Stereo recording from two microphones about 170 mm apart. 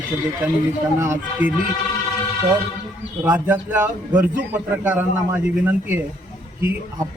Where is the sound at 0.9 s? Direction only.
15° right (ahead or behind).